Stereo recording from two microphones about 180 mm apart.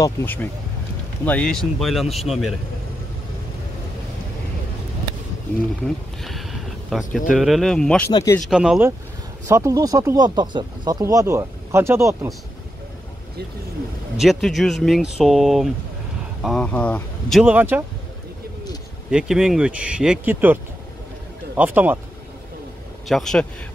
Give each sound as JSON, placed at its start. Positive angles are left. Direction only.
{"t": 0.0, "sound": "speech", "side_deg": 10}
{"t": 5.9, "sound": "speech", "side_deg": 0}
{"t": 8.1, "sound": "speech", "side_deg": 20}
{"t": 8.4, "sound": "speech", "side_deg": -5}
{"t": 9.5, "sound": "speech", "side_deg": -15}
{"t": 14.1, "sound": "speech", "side_deg": 0}
{"t": 19.0, "sound": "speech", "side_deg": -5}
{"t": 21.5, "sound": "speech", "side_deg": -10}
{"t": 23.0, "sound": "speech", "side_deg": 0}